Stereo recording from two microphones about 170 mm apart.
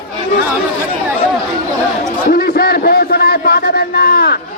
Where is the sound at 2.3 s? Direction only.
60° left (ahead or behind).